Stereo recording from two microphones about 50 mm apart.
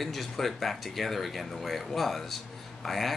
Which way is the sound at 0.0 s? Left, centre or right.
Centre.